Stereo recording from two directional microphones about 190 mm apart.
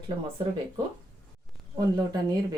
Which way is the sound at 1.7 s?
20° right (ahead or behind).